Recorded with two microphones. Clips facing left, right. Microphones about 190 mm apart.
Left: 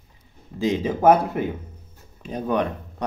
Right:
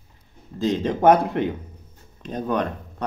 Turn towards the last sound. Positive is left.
turn(degrees=10)  # may be behind; listen again after turning